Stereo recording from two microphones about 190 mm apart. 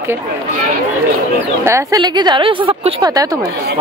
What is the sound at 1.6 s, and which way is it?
A woman's voice, 15° right (ahead or behind).